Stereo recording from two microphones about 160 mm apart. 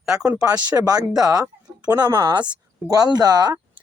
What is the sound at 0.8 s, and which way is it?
Speech, 25° right (ahead or behind).